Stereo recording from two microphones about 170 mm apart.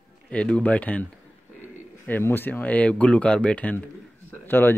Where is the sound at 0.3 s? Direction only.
5° left (ahead or behind).